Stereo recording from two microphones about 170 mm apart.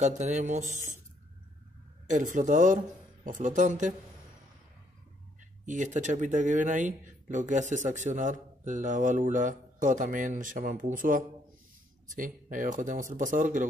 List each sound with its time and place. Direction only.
0.0 s speech: 45° right (ahead or behind)
2.0 s speech: 50° right (ahead or behind)
5.7 s speech: 45° right (ahead or behind)